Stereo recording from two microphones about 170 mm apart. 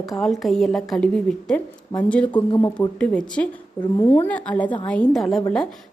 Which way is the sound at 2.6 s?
20° left (ahead or behind).